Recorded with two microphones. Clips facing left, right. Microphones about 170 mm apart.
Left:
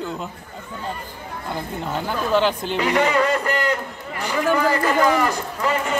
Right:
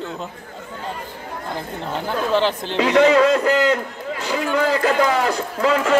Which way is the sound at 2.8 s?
85° right.